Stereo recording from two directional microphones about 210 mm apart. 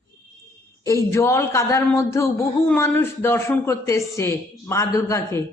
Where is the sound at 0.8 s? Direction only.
15° left (ahead or behind).